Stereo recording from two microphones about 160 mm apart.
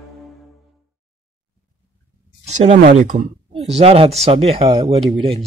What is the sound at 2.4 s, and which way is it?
Speech, 45° right (ahead or behind).